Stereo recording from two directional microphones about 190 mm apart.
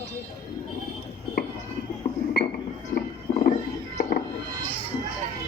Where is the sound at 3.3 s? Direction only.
30° left (ahead or behind).